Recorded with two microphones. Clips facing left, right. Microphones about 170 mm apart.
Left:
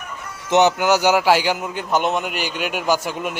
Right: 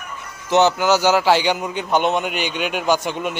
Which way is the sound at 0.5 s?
15° left (ahead or behind).